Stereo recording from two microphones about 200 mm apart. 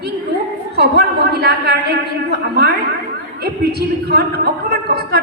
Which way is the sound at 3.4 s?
55° right (ahead or behind).